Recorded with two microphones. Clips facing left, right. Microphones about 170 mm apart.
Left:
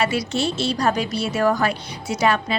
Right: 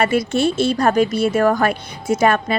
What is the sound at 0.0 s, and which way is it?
A woman's voice, 55° right (ahead or behind).